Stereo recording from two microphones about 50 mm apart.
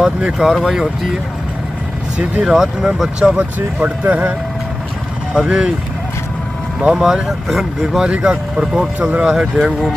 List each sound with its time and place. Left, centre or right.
0.4 s speech: centre
2.4 s speech: centre
3.2 s speech: right
3.5 s speech: right
5.3 s speech: centre
6.8 s speech: centre